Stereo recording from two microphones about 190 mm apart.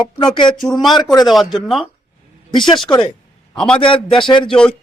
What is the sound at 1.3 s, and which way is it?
Speech, centre (ahead or behind).